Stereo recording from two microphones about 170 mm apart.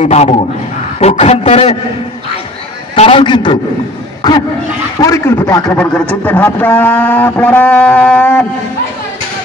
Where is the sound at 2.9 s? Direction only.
30° left (ahead or behind).